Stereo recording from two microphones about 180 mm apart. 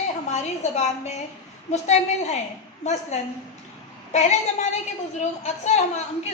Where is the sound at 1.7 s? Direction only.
40° left (ahead or behind).